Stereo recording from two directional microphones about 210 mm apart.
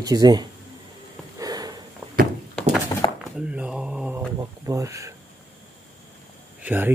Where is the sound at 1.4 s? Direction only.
15° right (ahead or behind).